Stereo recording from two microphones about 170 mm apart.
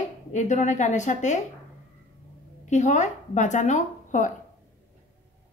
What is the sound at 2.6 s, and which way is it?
Speech, 45° left (ahead or behind).